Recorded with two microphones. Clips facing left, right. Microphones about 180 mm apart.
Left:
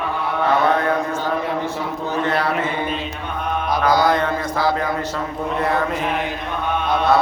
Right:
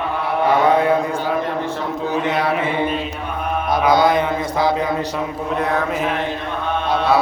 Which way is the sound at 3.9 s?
25° right (ahead or behind).